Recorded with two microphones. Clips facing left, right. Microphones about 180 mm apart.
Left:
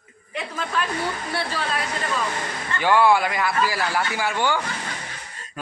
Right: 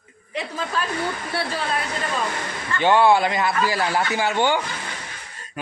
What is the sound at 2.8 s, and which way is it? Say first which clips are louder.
A man's voice: right 2 dB; 25° right (ahead or behind).